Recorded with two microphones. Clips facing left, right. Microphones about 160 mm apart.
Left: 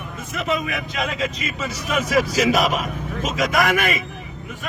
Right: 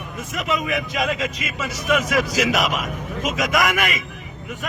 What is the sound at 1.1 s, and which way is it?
Speech, 30° left (ahead or behind).